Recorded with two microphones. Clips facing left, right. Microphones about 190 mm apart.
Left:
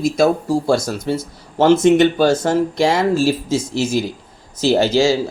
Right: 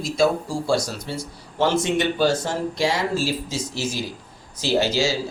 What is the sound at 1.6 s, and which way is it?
Speech, 50° left (ahead or behind).